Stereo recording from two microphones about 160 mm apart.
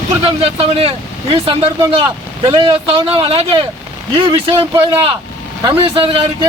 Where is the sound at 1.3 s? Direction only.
25° right (ahead or behind).